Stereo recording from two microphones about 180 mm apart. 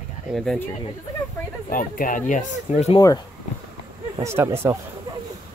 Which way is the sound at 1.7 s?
50° left (ahead or behind).